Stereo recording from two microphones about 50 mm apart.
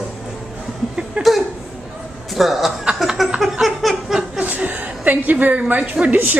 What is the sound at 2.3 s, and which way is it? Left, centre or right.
Speech, centre.